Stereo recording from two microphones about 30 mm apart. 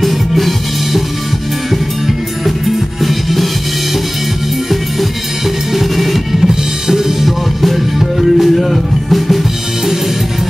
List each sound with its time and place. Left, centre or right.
0.0 s music: centre
3.0 s music: centre
5.7 s drum: centre
6.9 s music: centre
7.2 s music: centre